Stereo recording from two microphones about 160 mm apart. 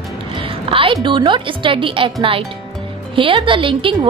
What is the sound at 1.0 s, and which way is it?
Speech, 30° right (ahead or behind).